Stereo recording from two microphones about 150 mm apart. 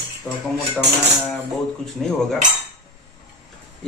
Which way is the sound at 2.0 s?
5° left (ahead or behind).